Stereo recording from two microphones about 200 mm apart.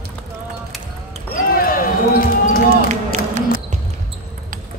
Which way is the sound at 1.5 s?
45° left (ahead or behind).